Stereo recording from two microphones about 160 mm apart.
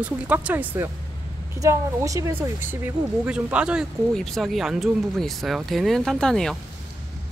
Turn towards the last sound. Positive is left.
turn(degrees=5)  # may be behind; listen again after turning